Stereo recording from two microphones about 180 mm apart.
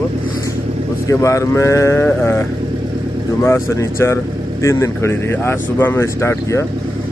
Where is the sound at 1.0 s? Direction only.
15° left (ahead or behind).